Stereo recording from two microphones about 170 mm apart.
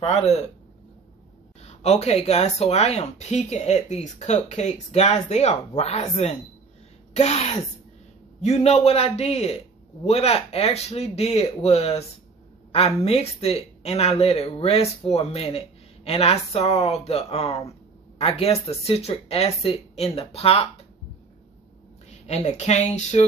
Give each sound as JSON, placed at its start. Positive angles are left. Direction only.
{"t": 0.0, "sound": "speech", "side_deg": 40}
{"t": 1.6, "sound": "speech", "side_deg": 40}
{"t": 22.1, "sound": "speech", "side_deg": 40}